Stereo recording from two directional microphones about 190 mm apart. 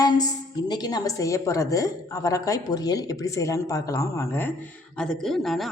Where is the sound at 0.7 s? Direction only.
20° left (ahead or behind).